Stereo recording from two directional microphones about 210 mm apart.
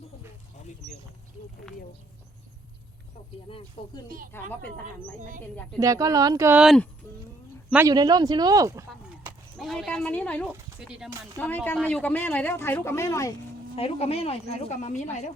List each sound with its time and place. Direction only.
3.8 s speech: 25° left (ahead or behind)
4.3 s speech: 10° left (ahead or behind)
5.8 s speech: 15° right (ahead or behind)
7.7 s speech: 15° right (ahead or behind)
9.6 s speech: centre (ahead or behind)
10.5 s speech: 5° right (ahead or behind)
11.3 s speech: 10° left (ahead or behind)
13.7 s speech: 30° left (ahead or behind)